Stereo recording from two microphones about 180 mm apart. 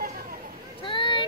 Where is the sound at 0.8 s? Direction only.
25° left (ahead or behind).